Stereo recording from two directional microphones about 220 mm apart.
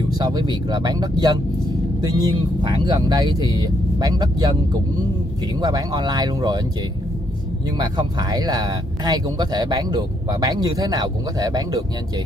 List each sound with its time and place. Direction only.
0.2 s speech: 15° right (ahead or behind)
5.6 s speech: 15° right (ahead or behind)
7.7 s speech: 20° right (ahead or behind)